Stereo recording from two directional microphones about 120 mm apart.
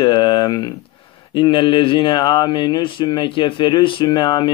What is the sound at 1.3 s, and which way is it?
Speech, 45° left (ahead or behind).